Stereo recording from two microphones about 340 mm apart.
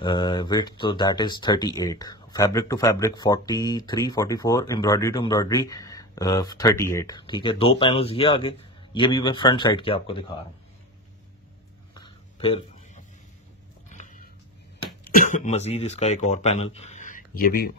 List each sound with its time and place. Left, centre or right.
0.0 s speech: centre
11.9 s a sound: centre
13.8 s biting: left
15.0 s speech: left